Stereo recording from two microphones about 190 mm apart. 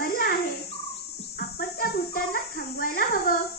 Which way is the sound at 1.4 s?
50° left (ahead or behind).